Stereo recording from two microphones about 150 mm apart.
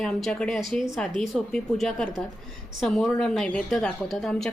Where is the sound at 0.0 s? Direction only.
5° left (ahead or behind).